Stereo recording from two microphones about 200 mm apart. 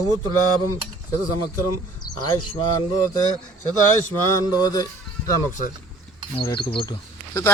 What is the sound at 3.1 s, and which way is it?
Speech, 20° left (ahead or behind).